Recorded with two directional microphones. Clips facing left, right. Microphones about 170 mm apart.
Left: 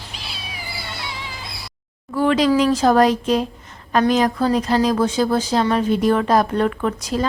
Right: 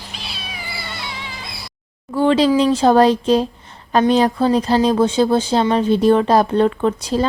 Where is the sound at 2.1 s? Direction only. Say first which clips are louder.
Right 2 dB; 25° right (ahead or behind).